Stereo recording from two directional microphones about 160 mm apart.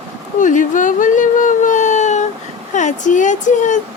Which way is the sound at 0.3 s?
55° left (ahead or behind).